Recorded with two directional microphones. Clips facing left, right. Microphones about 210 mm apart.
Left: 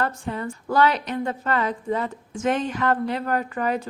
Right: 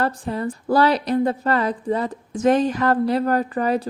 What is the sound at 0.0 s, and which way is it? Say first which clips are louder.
A woman's voice: right 4 dB; 35° right (ahead or behind).